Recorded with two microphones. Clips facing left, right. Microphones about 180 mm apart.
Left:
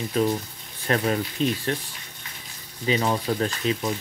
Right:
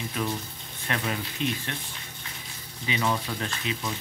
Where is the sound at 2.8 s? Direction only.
35° left (ahead or behind).